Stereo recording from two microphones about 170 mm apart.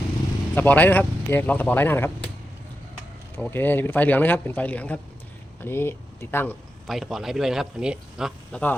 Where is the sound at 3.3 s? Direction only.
10° left (ahead or behind).